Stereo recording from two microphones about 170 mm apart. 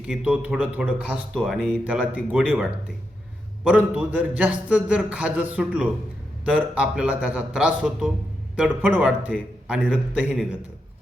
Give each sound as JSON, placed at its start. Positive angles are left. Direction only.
{"t": 0.1, "sound": "a man's voice", "side_deg": -5}